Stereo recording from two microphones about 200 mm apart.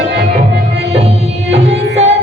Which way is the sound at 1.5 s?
30° right (ahead or behind).